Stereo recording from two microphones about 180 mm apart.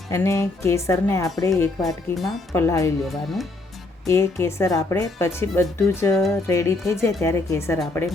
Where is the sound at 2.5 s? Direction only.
15° left (ahead or behind).